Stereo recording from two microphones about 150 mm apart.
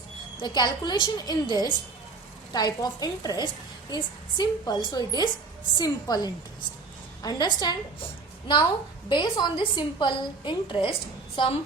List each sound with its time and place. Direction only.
0.3 s a woman's voice: 30° left (ahead or behind)
9.0 s a woman's voice: 30° left (ahead or behind)